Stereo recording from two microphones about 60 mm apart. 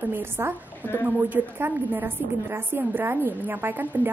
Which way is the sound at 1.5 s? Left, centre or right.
Right.